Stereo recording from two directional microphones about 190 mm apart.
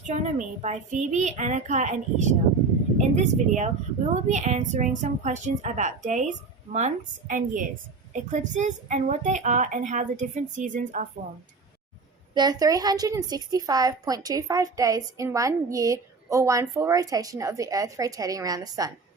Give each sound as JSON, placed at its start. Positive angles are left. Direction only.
{"t": 0.1, "sound": "a woman's voice", "side_deg": -40}
{"t": 12.3, "sound": "a woman's voice", "side_deg": -20}